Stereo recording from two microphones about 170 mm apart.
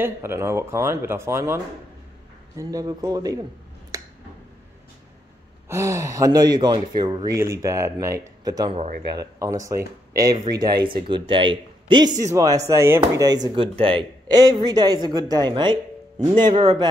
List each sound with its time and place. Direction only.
0.0 s speech: 15° right (ahead or behind)
3.9 s finger snapping: 20° right (ahead or behind)
5.7 s speech: 20° right (ahead or behind)
8.7 s speech: 45° right (ahead or behind)
9.1 s speech: 20° right (ahead or behind)